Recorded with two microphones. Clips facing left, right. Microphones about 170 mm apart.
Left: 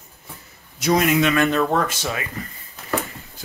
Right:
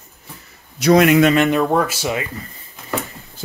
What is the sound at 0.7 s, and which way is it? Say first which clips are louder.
Speech: right 6 dB; 70° right (ahead or behind).